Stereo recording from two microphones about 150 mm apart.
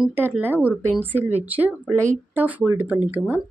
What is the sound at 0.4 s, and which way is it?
A woman's voice, 10° right (ahead or behind).